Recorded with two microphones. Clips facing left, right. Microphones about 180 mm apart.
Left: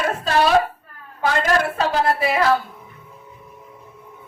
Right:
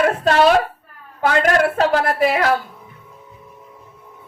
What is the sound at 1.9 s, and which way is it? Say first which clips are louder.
Speech: right 3 dB; 55° right (ahead or behind).